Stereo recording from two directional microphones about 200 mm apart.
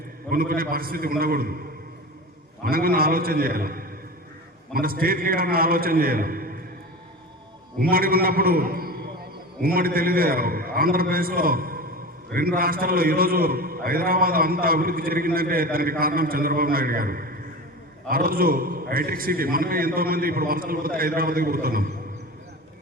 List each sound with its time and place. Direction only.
0.3 s a man's voice: 45° right (ahead or behind)
2.6 s a man's voice: 45° right (ahead or behind)
7.8 s a man's voice: 45° right (ahead or behind)